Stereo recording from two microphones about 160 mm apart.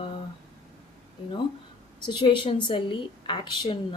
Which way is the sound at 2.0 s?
30° left (ahead or behind).